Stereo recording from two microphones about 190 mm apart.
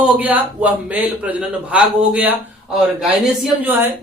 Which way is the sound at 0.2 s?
10° right (ahead or behind).